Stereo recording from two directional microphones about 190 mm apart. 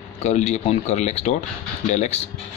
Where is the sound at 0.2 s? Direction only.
35° left (ahead or behind).